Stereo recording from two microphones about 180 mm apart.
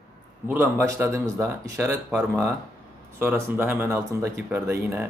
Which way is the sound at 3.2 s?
10° right (ahead or behind).